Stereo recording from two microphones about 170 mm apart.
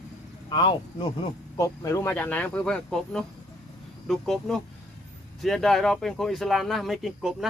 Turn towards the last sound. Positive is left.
turn(degrees=0)  # may be behind; listen again after turning